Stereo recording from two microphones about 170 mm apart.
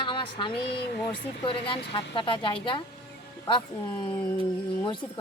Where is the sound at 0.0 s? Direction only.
30° left (ahead or behind).